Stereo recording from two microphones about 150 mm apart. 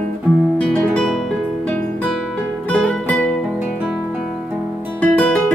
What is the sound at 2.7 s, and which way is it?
Music, 5° left (ahead or behind).